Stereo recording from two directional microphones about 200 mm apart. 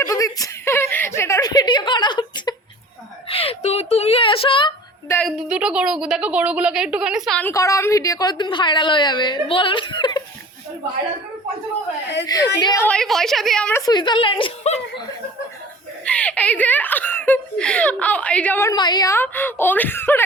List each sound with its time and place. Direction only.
0.0 s a woman's voice: 15° left (ahead or behind)
5.0 s speech: 10° left (ahead or behind)
5.5 s a woman's voice: 5° right (ahead or behind)
7.5 s a woman's voice: 15° left (ahead or behind)
12.2 s a woman's voice: 20° left (ahead or behind)
12.9 s a woman's voice: centre (ahead or behind)
13.8 s a woman's voice: 20° left (ahead or behind)
16.0 s speech: 5° left (ahead or behind)